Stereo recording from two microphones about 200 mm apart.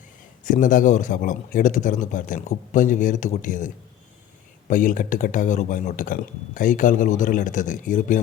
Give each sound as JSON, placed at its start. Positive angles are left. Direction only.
{"t": 0.4, "sound": "speech", "side_deg": 40}
{"t": 4.7, "sound": "speech", "side_deg": 40}